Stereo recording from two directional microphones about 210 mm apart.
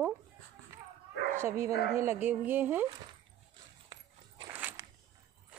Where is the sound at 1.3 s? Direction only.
15° right (ahead or behind).